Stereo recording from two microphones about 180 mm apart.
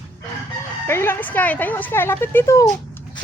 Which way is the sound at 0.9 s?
15° left (ahead or behind).